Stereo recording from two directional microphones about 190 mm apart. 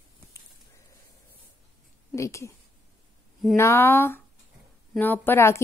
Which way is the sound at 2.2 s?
15° left (ahead or behind).